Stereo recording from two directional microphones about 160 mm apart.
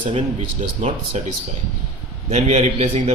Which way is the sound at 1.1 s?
45° right (ahead or behind).